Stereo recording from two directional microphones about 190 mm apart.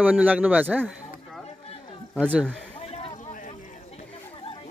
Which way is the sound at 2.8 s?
30° left (ahead or behind).